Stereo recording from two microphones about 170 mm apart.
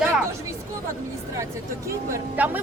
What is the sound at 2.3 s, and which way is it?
Speech, 10° right (ahead or behind).